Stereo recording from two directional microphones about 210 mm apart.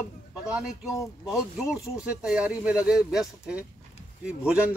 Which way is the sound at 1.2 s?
5° right (ahead or behind).